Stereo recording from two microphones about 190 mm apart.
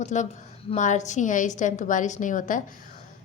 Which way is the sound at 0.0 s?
40° left (ahead or behind).